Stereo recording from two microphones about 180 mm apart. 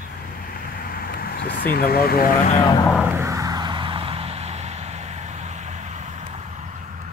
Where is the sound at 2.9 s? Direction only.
15° right (ahead or behind); by 6.3 s 40° right (ahead or behind).